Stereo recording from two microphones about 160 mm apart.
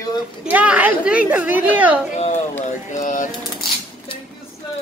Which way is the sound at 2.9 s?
55° left (ahead or behind).